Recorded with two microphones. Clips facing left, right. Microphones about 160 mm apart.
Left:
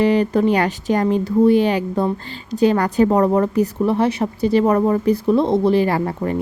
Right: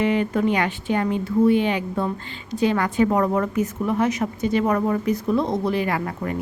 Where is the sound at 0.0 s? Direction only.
35° left (ahead or behind).